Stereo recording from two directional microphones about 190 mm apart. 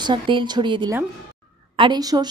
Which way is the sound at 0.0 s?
25° right (ahead or behind).